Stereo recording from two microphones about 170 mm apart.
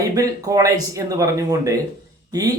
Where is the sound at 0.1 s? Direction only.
20° right (ahead or behind).